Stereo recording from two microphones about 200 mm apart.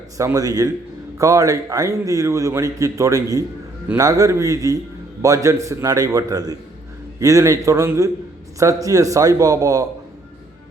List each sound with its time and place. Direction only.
0.2 s a man's voice: 15° right (ahead or behind)